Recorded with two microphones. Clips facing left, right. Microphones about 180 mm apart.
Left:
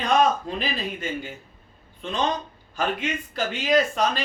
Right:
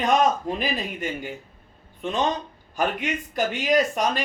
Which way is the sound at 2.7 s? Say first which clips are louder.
Right 1 dB; 15° right (ahead or behind).